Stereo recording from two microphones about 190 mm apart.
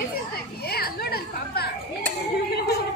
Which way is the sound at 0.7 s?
55° left (ahead or behind).